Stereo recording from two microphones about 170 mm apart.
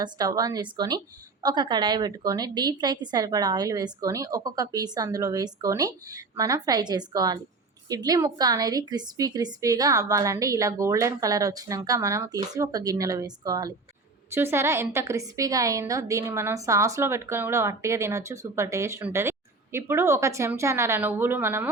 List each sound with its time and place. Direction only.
0.0 s a woman's voice: 25° right (ahead or behind)